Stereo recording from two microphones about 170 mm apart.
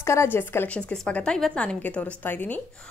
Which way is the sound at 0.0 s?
15° left (ahead or behind).